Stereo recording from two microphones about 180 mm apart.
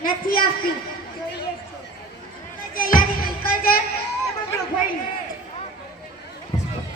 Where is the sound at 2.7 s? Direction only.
50° left (ahead or behind).